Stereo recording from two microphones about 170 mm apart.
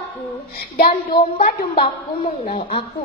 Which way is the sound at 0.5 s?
60° left (ahead or behind).